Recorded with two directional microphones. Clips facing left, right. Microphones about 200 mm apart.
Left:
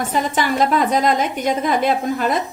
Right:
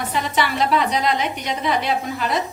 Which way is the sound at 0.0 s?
45° left (ahead or behind).